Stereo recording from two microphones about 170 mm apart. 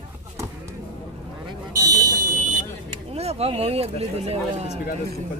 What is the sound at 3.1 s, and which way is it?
Speech, 35° right (ahead or behind).